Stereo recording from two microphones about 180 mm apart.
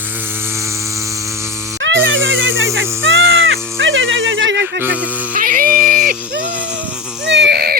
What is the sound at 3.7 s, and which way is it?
Music, 90° right.